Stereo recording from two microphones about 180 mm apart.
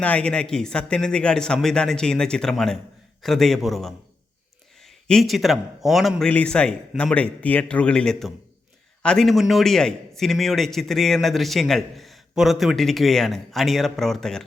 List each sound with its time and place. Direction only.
0.0 s a man's voice: 5° left (ahead or behind)
5.0 s a man's voice: centre (ahead or behind)